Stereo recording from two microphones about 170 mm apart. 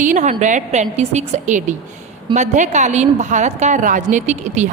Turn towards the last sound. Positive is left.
turn(degrees=-45)  # may be behind; listen again after turning